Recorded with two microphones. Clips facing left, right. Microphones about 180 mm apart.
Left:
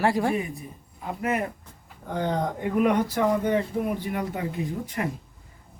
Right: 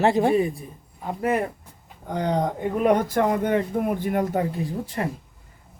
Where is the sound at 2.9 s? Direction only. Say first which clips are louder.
Right 2 dB; 55° right (ahead or behind).